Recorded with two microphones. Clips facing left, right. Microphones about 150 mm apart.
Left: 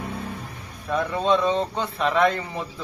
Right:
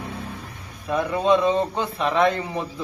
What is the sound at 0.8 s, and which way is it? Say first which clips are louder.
Speech: right 2 dB; 10° right (ahead or behind).